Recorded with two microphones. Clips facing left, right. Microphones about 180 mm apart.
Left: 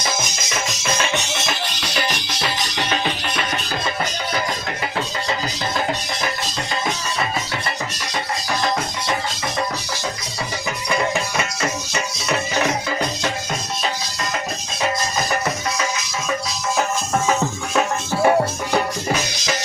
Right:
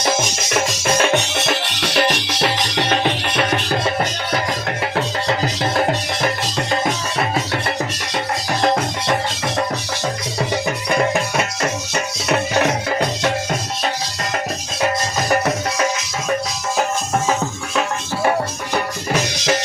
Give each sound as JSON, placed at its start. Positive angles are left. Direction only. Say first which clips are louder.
{"t": 0.9, "sound": "music", "louder": "right 8 dB", "side_deg": -55}
{"t": 10.8, "sound": "music", "louder": "right 2 dB", "side_deg": -55}
{"t": 15.3, "sound": "music", "louder": "right 4 dB", "side_deg": -55}